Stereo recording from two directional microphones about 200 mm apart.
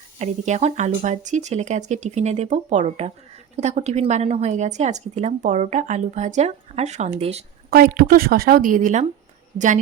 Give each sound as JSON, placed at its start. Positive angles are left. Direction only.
{"t": 0.2, "sound": "a woman's voice", "side_deg": -35}
{"t": 7.7, "sound": "a woman's voice", "side_deg": -50}